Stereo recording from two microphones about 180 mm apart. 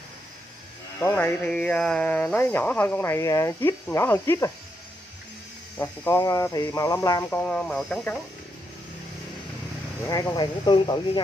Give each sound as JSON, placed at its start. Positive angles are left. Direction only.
{"t": 0.9, "sound": "speech", "side_deg": 10}
{"t": 5.8, "sound": "speech", "side_deg": 15}
{"t": 7.2, "sound": "speech", "side_deg": 5}
{"t": 10.0, "sound": "speech", "side_deg": 20}